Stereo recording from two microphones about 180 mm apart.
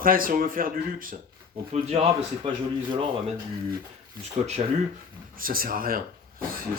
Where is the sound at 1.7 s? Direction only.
35° right (ahead or behind).